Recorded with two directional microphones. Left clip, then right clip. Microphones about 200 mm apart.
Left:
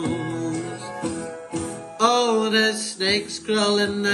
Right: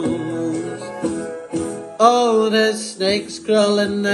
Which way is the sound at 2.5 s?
30° right (ahead or behind).